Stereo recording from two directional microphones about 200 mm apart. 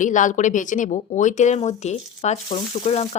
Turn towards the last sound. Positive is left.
turn(degrees=30)  # may be behind; listen again after turning